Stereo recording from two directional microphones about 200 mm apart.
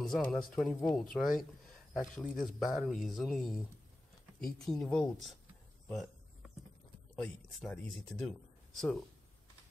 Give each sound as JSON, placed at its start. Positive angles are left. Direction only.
{"t": 0.0, "sound": "speech", "side_deg": 0}
{"t": 7.2, "sound": "speech", "side_deg": 0}